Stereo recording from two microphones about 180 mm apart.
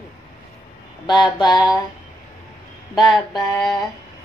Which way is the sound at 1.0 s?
25° left (ahead or behind).